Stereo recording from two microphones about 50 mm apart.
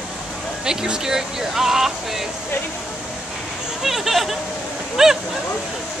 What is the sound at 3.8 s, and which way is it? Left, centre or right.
Speech, centre.